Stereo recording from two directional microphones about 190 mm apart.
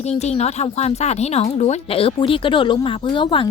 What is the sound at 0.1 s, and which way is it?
A woman's voice, 35° left (ahead or behind).